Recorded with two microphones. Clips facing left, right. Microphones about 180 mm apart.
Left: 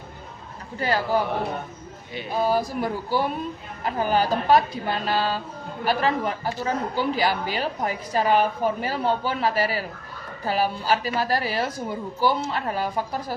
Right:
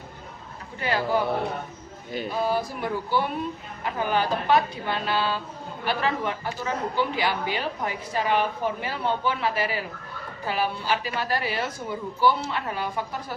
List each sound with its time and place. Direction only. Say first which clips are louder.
0.8 s a woman's voice: left 2 dB; 40° left (ahead or behind)
2.3 s a woman's voice: left 4 dB; 40° left (ahead or behind)